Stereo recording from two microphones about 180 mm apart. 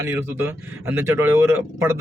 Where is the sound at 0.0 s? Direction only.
10° right (ahead or behind).